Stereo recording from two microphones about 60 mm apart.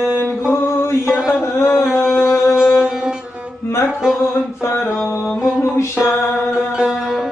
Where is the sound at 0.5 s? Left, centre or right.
Left.